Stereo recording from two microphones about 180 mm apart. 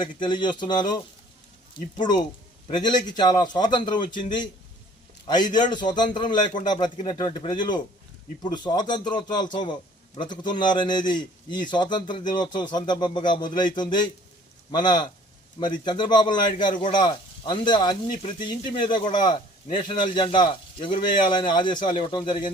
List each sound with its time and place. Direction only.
0.2 s speech: 25° left (ahead or behind)
5.5 s speech: 25° left (ahead or behind)